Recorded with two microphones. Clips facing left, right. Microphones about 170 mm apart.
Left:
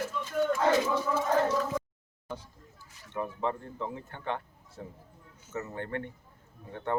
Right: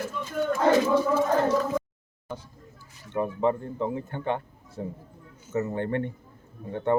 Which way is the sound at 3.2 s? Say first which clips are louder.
Right 7 dB; 15° right (ahead or behind).